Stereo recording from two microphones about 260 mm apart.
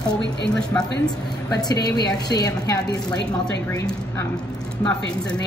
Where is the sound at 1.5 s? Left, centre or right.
Centre.